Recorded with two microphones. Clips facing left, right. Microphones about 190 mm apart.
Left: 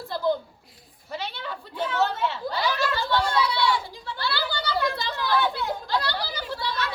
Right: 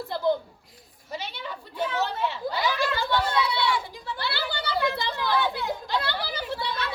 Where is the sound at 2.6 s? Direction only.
20° right (ahead or behind).